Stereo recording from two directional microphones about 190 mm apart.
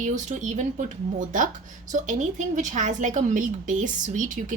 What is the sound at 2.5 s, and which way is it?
A woman's voice, 40° right (ahead or behind).